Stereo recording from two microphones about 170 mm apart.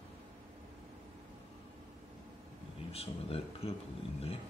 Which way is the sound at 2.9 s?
35° left (ahead or behind).